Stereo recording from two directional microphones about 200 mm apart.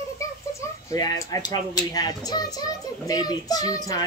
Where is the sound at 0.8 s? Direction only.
15° left (ahead or behind).